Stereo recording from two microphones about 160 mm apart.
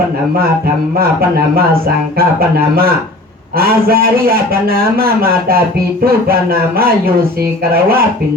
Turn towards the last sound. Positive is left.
turn(degrees=-70)  # may be behind; listen again after turning